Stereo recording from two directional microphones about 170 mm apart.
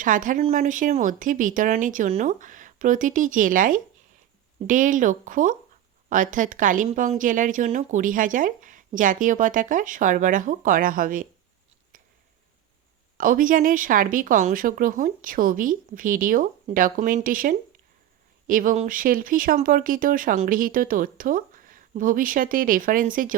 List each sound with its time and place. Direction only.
0.0 s speech: 50° right (ahead or behind)
13.1 s speech: 55° right (ahead or behind)